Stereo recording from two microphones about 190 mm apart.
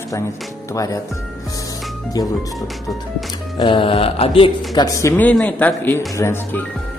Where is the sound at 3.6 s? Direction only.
25° left (ahead or behind).